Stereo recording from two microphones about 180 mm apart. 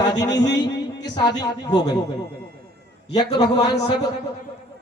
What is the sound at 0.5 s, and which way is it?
Speech, 75° left (ahead or behind).